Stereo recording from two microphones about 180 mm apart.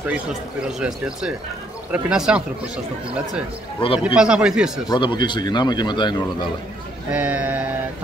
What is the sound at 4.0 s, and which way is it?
Speech, 5° right (ahead or behind).